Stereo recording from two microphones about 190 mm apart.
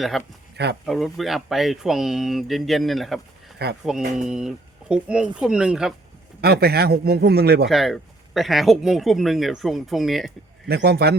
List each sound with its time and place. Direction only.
0.1 s speech: centre (ahead or behind)
0.5 s speech: 65° right (ahead or behind)
0.9 s speech: centre (ahead or behind)
3.6 s speech: 60° right (ahead or behind)
4.3 s speech: 5° right (ahead or behind)
6.4 s speech: 55° right (ahead or behind)
7.7 s speech: centre (ahead or behind)
10.7 s speech: 60° right (ahead or behind)